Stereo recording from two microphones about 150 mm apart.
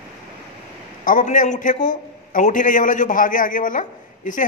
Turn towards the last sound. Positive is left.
turn(degrees=60)  # may be behind; listen again after turning